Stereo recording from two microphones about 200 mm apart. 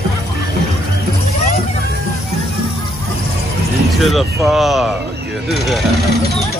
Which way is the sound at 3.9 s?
Centre (ahead or behind).